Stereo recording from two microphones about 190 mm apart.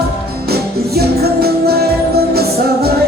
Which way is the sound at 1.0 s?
55° right (ahead or behind).